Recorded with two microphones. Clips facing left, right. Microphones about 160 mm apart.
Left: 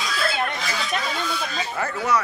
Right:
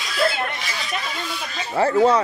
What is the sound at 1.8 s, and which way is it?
Speech, 30° right (ahead or behind).